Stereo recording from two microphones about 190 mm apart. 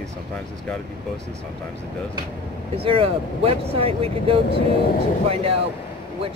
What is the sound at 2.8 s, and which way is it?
Speech, 30° right (ahead or behind).